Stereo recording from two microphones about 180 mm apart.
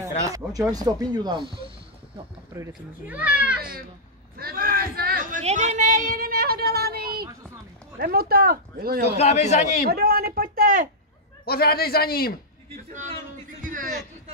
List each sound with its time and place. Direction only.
0.3 s speech: 20° right (ahead or behind)
2.5 s speech: 10° right (ahead or behind)
4.4 s a sound: 55° right (ahead or behind)
5.4 s a woman's voice: 40° right (ahead or behind); by 9.0 s 55° right (ahead or behind)
9.2 s a man's voice: 40° left (ahead or behind)
9.8 s speech: 60° right (ahead or behind)
11.4 s a man's voice: 60° left (ahead or behind)
13.6 s a sound: 50° right (ahead or behind)